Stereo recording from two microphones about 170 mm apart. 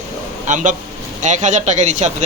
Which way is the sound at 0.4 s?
45° right (ahead or behind).